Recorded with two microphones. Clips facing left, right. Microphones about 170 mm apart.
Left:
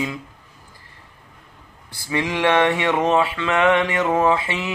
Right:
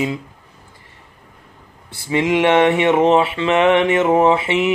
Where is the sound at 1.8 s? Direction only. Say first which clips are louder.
Right 6 dB; 25° right (ahead or behind).